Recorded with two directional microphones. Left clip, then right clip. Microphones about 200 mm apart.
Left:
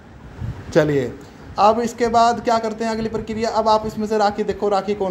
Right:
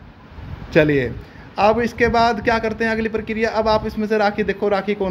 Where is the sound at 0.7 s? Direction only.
15° right (ahead or behind).